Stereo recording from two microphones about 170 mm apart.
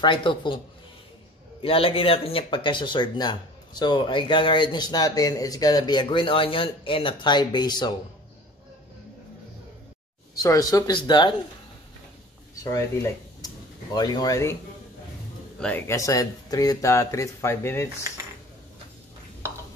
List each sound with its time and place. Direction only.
0.0 s speech: 30° left (ahead or behind)
1.6 s speech: 30° left (ahead or behind)
10.3 s speech: 20° left (ahead or behind)
12.6 s speech: 15° left (ahead or behind)
15.6 s speech: 15° left (ahead or behind)